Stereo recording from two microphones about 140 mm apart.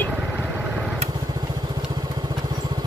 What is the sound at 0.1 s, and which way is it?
Vehicle, 10° right (ahead or behind).